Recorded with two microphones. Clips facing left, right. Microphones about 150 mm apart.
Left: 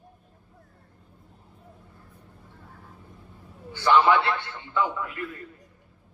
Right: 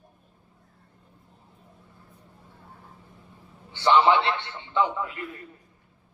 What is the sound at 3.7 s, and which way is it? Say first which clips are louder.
A man's voice: even; 25° right (ahead or behind).